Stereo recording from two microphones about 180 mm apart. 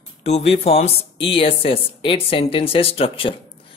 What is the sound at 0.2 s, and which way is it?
Speech, 35° left (ahead or behind).